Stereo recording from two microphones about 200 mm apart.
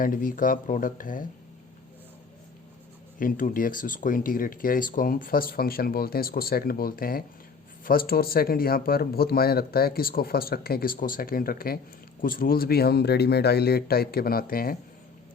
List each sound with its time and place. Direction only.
0.0 s speech: 45° left (ahead or behind)
3.2 s speech: 45° left (ahead or behind)